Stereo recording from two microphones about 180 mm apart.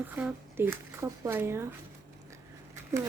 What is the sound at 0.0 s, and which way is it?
Speech, 10° right (ahead or behind).